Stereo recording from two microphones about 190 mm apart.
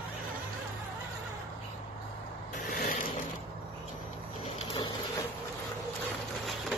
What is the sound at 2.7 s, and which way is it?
Zipper, 45° left (ahead or behind).